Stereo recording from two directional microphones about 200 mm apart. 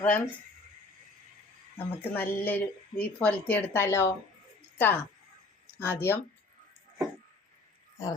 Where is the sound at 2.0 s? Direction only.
10° left (ahead or behind).